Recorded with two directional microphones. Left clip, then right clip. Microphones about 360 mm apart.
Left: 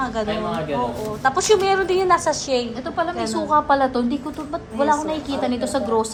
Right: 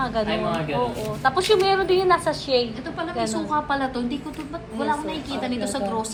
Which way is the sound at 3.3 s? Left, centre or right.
Left.